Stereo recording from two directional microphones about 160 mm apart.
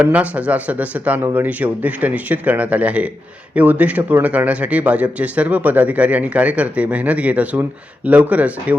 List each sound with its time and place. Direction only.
0.0 s speech: 10° right (ahead or behind)